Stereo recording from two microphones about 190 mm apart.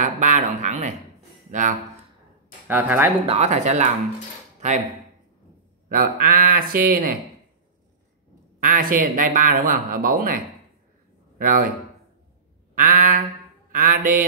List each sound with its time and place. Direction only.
0.0 s a sound: 40° right (ahead or behind)
1.5 s a man's voice: 40° right (ahead or behind)
2.7 s speech: 10° right (ahead or behind)
3.3 s speech: 35° right (ahead or behind)
5.9 s a man's voice: 50° right (ahead or behind)
8.5 s a man's voice: 45° right (ahead or behind)
12.7 s a man's voice: 45° right (ahead or behind)
13.7 s mantra: 45° right (ahead or behind)